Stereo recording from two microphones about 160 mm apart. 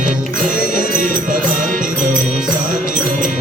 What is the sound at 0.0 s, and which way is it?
Music, 55° right (ahead or behind).